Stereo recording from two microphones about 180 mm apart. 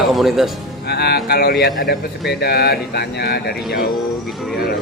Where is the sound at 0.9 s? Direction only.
65° left (ahead or behind).